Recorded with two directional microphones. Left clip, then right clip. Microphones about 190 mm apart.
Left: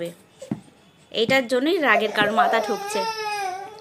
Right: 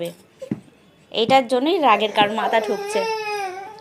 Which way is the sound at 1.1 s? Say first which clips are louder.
Right 3 dB; centre (ahead or behind).